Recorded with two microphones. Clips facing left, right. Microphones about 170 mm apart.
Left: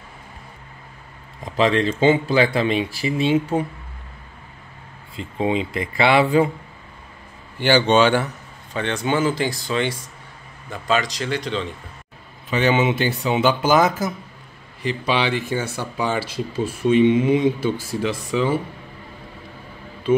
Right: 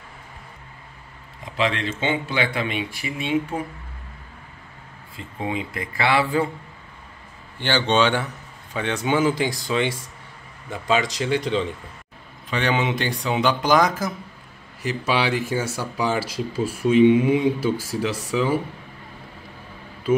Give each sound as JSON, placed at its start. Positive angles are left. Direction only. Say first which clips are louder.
{"t": 1.4, "sound": "speech", "louder": "left 6 dB", "side_deg": 40}
{"t": 5.1, "sound": "speech", "louder": "left 6 dB", "side_deg": 20}
{"t": 7.5, "sound": "speech", "louder": "left 5 dB", "side_deg": 10}
{"t": 8.7, "sound": "speech", "louder": "even", "side_deg": -10}
{"t": 12.4, "sound": "speech", "louder": "left 4 dB", "side_deg": 5}